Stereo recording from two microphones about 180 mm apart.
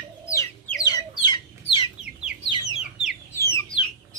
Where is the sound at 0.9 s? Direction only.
20° left (ahead or behind).